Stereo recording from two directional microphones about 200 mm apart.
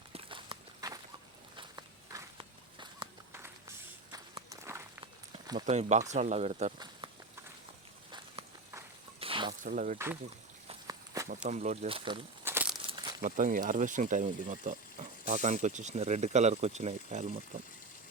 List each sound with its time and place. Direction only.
0.1 s walk: 25° right (ahead or behind)
3.3 s a sound: 15° right (ahead or behind)
4.4 s walk: 15° right (ahead or behind)
5.3 s speech: 30° right (ahead or behind)
7.0 s clip-clop: 25° right (ahead or behind)
9.2 s a sound: 25° right (ahead or behind)
9.6 s speech: 40° right (ahead or behind)
10.8 s walk: 15° right (ahead or behind)
11.4 s speech: 35° right (ahead or behind)
12.5 s crumpling: 10° right (ahead or behind)
12.8 s crumpling: 25° right (ahead or behind)
13.2 s speech: 40° right (ahead or behind)